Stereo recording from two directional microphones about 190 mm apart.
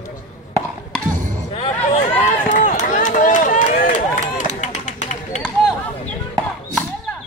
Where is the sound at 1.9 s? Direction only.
35° left (ahead or behind).